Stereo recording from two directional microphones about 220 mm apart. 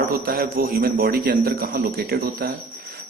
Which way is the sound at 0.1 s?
40° right (ahead or behind).